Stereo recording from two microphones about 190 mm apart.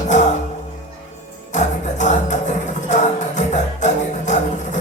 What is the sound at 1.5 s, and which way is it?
Music, 40° left (ahead or behind).